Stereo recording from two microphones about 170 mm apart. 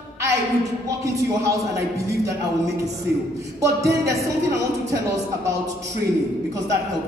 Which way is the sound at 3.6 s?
20° right (ahead or behind).